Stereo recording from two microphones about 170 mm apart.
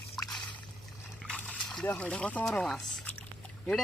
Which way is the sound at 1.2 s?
5° left (ahead or behind).